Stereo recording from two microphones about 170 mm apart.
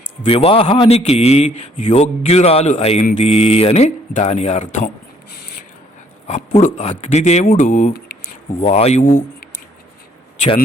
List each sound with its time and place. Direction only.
0.3 s a man's voice: 35° left (ahead or behind)
6.2 s a man's voice: 40° left (ahead or behind)
7.9 s a sound: 65° left (ahead or behind)
8.6 s a man's voice: 40° left (ahead or behind)